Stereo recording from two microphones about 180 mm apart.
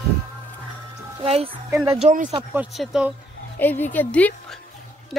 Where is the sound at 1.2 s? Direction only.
35° right (ahead or behind).